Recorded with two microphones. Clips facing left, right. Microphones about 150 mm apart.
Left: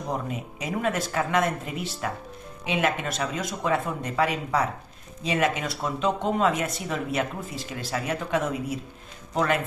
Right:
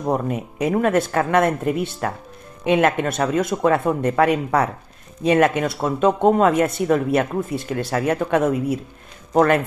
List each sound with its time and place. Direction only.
0.0 s speech: 60° right (ahead or behind)